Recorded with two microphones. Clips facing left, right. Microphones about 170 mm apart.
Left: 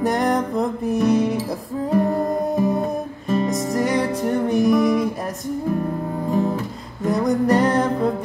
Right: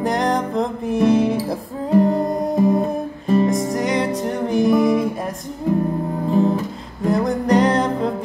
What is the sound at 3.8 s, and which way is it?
Music, 15° right (ahead or behind).